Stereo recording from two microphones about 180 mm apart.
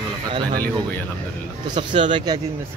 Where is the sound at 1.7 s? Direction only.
25° right (ahead or behind).